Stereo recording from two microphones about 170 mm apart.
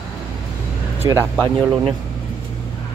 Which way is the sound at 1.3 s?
Centre (ahead or behind).